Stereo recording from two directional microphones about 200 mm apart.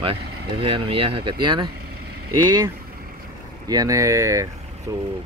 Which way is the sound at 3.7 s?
15° right (ahead or behind).